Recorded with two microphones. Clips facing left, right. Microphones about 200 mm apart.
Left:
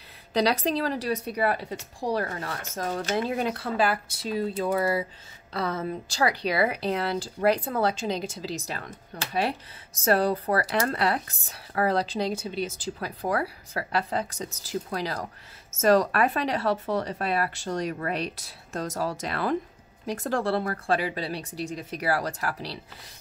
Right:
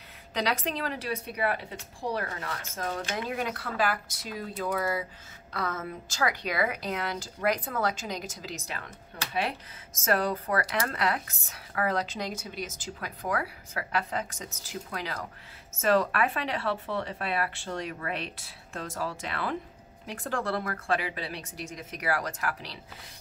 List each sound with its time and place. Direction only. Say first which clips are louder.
0.3 s a woman's voice: left 6 dB; 35° left (ahead or behind)